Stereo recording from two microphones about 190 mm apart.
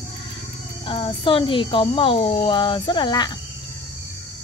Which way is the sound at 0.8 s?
30° left (ahead or behind).